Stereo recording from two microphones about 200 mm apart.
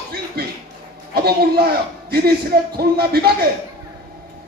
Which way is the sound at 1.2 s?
50° right (ahead or behind).